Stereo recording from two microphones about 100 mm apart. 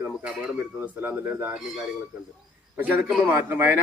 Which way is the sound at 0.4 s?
15° right (ahead or behind).